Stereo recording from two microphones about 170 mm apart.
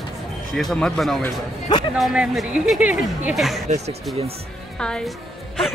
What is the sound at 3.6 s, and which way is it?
Speech, 40° right (ahead or behind).